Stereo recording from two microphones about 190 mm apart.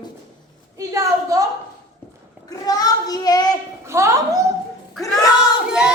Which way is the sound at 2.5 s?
20° left (ahead or behind).